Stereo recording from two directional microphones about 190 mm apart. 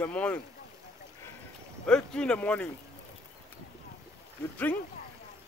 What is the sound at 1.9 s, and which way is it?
Speech, 5° left (ahead or behind).